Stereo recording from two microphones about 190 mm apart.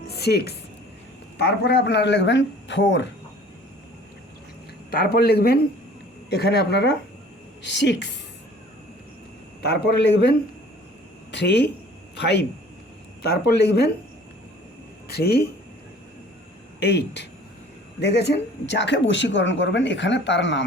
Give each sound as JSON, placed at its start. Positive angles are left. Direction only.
{"t": 0.1, "sound": "music", "side_deg": 60}
{"t": 1.4, "sound": "speech", "side_deg": 60}
{"t": 4.9, "sound": "a man's voice", "side_deg": 55}
{"t": 9.6, "sound": "a man's voice", "side_deg": 60}
{"t": 15.0, "sound": "speech", "side_deg": 55}
{"t": 16.8, "sound": "a man's voice", "side_deg": 65}